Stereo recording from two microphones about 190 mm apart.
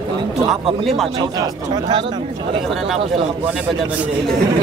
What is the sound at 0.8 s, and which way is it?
Speech, centre (ahead or behind).